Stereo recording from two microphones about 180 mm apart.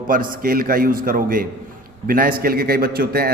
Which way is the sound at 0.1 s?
50° right (ahead or behind).